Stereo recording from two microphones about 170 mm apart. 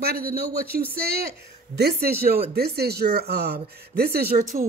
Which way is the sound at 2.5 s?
70° right (ahead or behind).